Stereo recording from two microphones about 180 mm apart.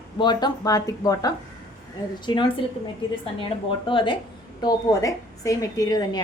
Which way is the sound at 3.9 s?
30° left (ahead or behind).